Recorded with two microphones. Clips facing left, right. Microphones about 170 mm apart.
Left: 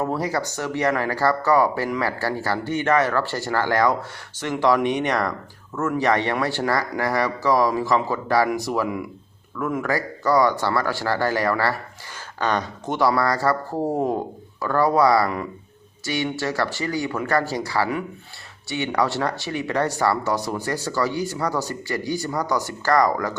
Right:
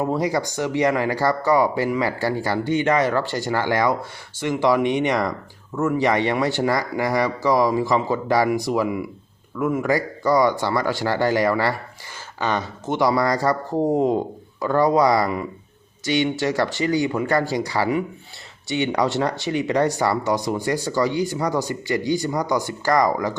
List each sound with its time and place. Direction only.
0.0 s speech: 15° right (ahead or behind)